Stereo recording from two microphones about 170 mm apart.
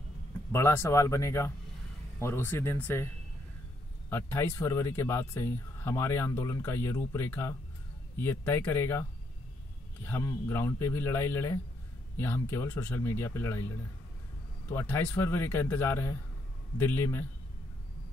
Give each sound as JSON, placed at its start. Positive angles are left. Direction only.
{"t": 0.5, "sound": "speech", "side_deg": 15}
{"t": 4.1, "sound": "speech", "side_deg": 15}
{"t": 10.0, "sound": "speech", "side_deg": 15}
{"t": 14.7, "sound": "speech", "side_deg": 15}